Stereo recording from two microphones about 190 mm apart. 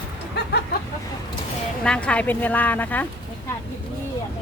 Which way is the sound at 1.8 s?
5° left (ahead or behind).